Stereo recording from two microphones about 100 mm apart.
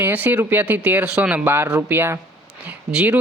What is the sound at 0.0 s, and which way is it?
Speech, 20° right (ahead or behind).